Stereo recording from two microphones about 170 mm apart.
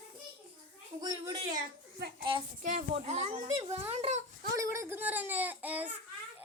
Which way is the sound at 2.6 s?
50° right (ahead or behind).